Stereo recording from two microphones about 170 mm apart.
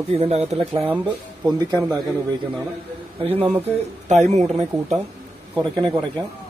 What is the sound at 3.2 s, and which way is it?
A man's voice, 35° right (ahead or behind).